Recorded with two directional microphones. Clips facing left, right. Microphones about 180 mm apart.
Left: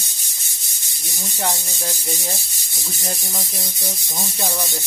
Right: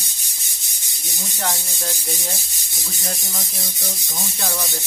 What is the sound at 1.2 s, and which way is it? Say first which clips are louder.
Speech: left 2 dB; 15° left (ahead or behind).